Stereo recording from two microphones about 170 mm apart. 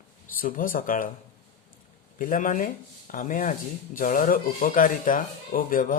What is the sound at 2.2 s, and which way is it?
Speech, 50° left (ahead or behind).